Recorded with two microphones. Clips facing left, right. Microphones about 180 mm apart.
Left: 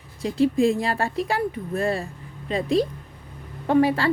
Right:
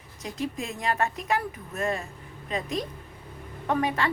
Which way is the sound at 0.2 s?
30° left (ahead or behind).